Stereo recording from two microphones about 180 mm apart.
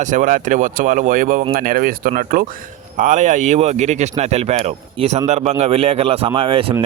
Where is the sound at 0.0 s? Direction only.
45° right (ahead or behind).